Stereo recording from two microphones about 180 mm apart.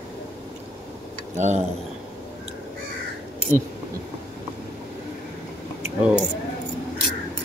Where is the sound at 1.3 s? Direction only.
40° right (ahead or behind).